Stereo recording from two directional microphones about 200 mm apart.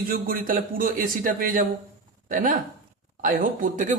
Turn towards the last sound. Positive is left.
turn(degrees=-40)  # may be behind; listen again after turning